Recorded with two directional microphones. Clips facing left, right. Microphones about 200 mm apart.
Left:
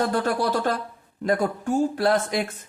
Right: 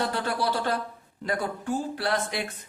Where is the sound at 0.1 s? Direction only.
45° left (ahead or behind).